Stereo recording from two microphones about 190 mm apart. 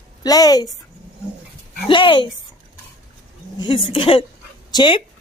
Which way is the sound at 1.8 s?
25° left (ahead or behind).